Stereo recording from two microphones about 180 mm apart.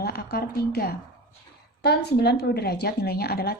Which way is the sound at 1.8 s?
65° left (ahead or behind).